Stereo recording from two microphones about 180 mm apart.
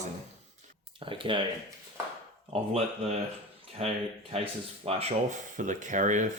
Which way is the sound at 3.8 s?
35° right (ahead or behind).